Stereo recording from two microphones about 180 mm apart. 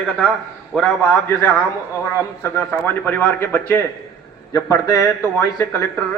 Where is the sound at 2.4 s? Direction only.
10° left (ahead or behind).